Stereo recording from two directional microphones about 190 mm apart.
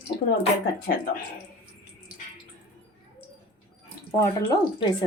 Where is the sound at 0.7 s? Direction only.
50° left (ahead or behind).